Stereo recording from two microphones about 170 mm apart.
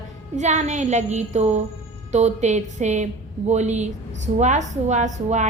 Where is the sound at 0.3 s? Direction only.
45° right (ahead or behind).